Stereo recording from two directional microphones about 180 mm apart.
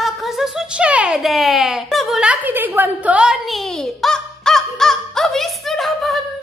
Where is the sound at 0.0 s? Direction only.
Centre (ahead or behind).